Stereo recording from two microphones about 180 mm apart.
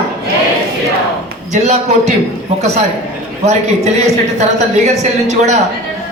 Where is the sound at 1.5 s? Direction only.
40° right (ahead or behind).